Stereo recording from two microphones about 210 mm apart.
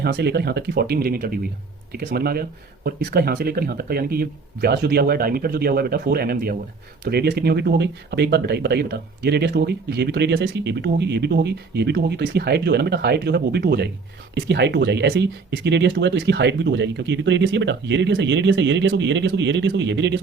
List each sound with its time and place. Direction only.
0.0 s speech: 50° right (ahead or behind)